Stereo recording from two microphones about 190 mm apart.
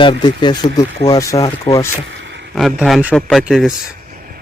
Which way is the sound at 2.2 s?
65° right (ahead or behind).